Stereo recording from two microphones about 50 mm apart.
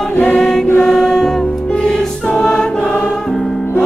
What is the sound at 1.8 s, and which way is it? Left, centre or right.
Choir, centre.